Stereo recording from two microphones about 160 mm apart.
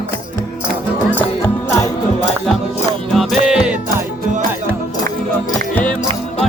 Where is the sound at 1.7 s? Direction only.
15° left (ahead or behind).